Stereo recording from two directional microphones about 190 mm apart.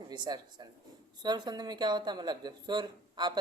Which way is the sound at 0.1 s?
20° right (ahead or behind).